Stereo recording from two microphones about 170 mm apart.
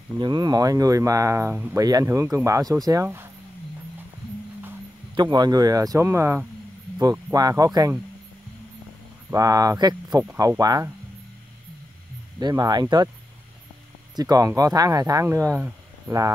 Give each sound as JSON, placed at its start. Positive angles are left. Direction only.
{"t": 0.2, "sound": "speech", "side_deg": -25}
{"t": 5.1, "sound": "speech", "side_deg": -25}
{"t": 9.3, "sound": "speech", "side_deg": -20}
{"t": 12.4, "sound": "speech", "side_deg": -25}
{"t": 14.1, "sound": "speech", "side_deg": -20}